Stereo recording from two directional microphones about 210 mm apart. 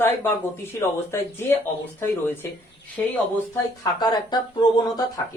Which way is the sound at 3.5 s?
20° left (ahead or behind).